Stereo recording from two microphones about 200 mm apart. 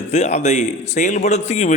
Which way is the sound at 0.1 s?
35° left (ahead or behind).